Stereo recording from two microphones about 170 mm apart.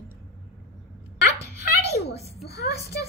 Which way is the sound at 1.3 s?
80° left.